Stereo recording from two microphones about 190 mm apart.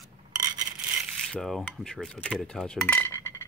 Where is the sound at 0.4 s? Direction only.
20° right (ahead or behind).